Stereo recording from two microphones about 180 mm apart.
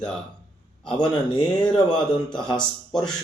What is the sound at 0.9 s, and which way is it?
Speech, 25° left (ahead or behind).